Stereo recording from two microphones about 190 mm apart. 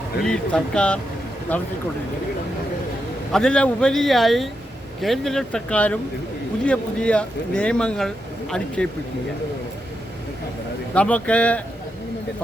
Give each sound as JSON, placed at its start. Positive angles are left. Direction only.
{"t": 0.2, "sound": "speech", "side_deg": 5}
{"t": 3.3, "sound": "speech", "side_deg": 5}
{"t": 10.9, "sound": "speech", "side_deg": 5}